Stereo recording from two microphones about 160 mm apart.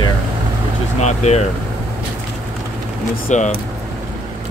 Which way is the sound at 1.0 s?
45° left (ahead or behind).